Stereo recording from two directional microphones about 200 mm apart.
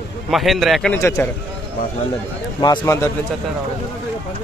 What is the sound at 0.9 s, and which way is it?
Speech, 15° left (ahead or behind).